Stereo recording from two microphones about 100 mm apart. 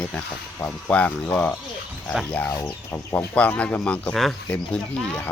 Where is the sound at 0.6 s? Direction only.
15° left (ahead or behind).